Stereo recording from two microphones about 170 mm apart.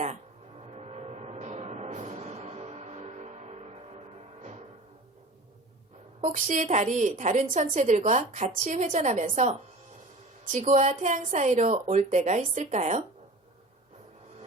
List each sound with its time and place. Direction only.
0.6 s music: 40° right (ahead or behind)
6.2 s a woman's voice: 45° right (ahead or behind)